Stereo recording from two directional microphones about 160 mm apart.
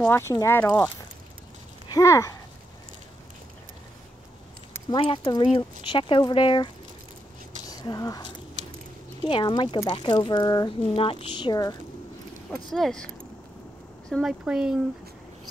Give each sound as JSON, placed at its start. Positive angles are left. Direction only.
{"t": 0.0, "sound": "speech", "side_deg": 15}
{"t": 4.8, "sound": "speech", "side_deg": 35}
{"t": 11.0, "sound": "speech", "side_deg": 35}
{"t": 12.7, "sound": "speech", "side_deg": 5}